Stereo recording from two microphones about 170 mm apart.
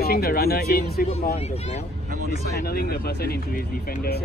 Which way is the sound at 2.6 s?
65° left (ahead or behind).